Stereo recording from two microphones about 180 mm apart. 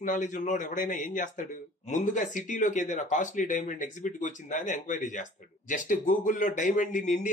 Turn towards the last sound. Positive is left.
turn(degrees=45)  # may be behind; listen again after turning